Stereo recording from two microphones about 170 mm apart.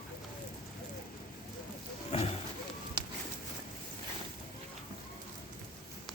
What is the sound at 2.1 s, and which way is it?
Roaring cats, 35° left (ahead or behind).